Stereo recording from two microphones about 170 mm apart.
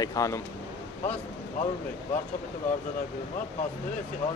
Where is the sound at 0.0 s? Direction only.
20° left (ahead or behind).